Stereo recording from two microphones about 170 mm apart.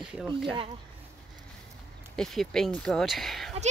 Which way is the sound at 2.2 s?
Centre (ahead or behind).